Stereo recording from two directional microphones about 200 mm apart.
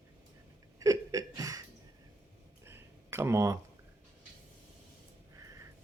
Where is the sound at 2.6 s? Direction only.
10° right (ahead or behind).